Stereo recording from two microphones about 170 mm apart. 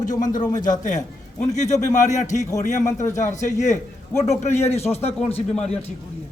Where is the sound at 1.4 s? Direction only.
45° left (ahead or behind).